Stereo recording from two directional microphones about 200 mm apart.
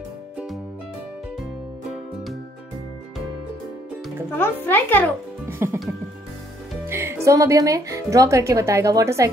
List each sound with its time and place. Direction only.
4.4 s a woman's voice: 10° left (ahead or behind)
5.5 s speech: 10° right (ahead or behind)
6.9 s speech: 15° right (ahead or behind)